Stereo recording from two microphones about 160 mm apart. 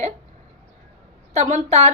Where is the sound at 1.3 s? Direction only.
50° right (ahead or behind).